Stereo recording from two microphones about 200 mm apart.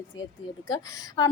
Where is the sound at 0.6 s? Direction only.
20° left (ahead or behind).